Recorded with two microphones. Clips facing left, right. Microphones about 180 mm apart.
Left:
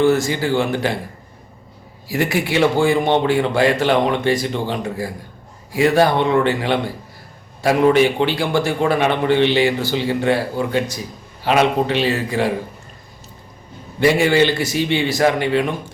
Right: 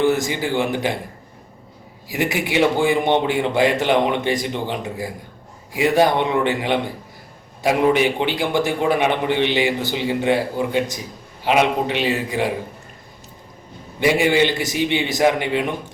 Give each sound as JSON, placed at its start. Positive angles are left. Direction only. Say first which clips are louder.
{"t": 0.0, "sound": "a man's voice", "louder": "left 3 dB", "side_deg": -15}
{"t": 2.0, "sound": "a man's voice", "louder": "left 3 dB", "side_deg": -15}
{"t": 14.0, "sound": "a man's voice", "louder": "left 2 dB", "side_deg": -15}